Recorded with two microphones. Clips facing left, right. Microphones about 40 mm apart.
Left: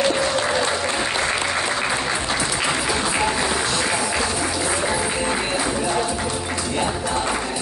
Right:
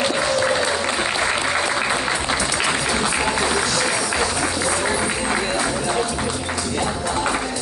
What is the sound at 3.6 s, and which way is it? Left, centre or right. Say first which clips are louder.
Music: right 1 dB; left.